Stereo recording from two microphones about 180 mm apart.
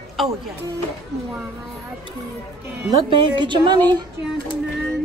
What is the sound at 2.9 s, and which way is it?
Speech, 25° right (ahead or behind).